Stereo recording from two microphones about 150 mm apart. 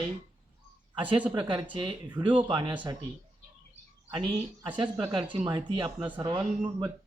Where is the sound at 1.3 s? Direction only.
35° right (ahead or behind).